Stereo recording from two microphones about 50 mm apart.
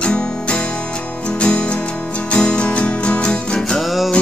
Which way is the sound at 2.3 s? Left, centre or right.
Centre.